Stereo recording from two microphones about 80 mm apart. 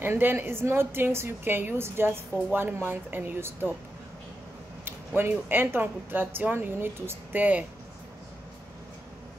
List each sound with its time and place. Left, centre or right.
0.0 s a woman's voice: right
4.8 s a sound: right
5.5 s a woman's voice: right